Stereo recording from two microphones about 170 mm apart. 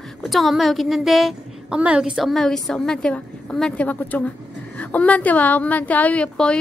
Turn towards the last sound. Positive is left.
turn(degrees=5)  # may be behind; listen again after turning